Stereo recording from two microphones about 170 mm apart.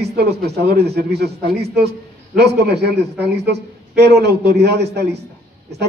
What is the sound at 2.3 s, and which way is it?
A man's voice, 75° right (ahead or behind).